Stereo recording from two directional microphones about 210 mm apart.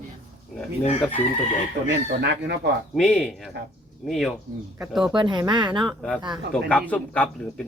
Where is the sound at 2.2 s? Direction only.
55° right (ahead or behind).